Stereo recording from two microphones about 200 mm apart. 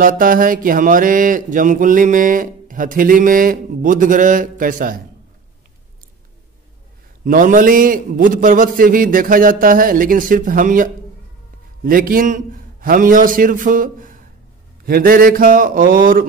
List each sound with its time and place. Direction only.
0.0 s mantra: 45° right (ahead or behind)
7.2 s mantra: 40° right (ahead or behind)